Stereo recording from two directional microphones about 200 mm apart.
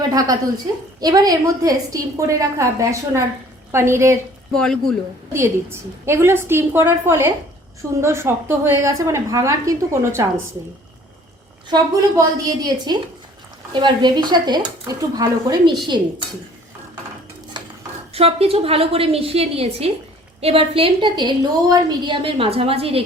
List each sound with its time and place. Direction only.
0.1 s a woman's voice: 20° right (ahead or behind)
4.5 s speech: 5° left (ahead or behind)
5.3 s a woman's voice: 15° right (ahead or behind)
11.7 s a woman's voice: 20° right (ahead or behind)
18.1 s a woman's voice: 30° right (ahead or behind)